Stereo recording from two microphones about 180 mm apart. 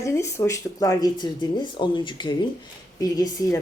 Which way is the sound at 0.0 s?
15° left (ahead or behind).